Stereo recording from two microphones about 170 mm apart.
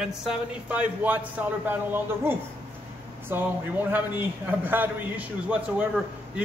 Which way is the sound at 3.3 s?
10° right (ahead or behind).